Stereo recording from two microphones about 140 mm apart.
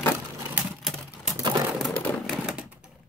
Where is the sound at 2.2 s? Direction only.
5° right (ahead or behind).